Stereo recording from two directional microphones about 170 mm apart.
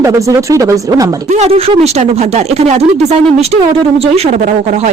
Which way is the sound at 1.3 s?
40° right (ahead or behind).